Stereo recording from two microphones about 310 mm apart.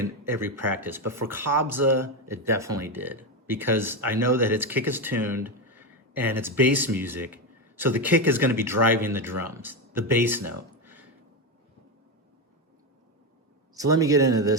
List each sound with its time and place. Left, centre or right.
0.0 s speech: centre
10.8 s a sound: centre
13.7 s speech: centre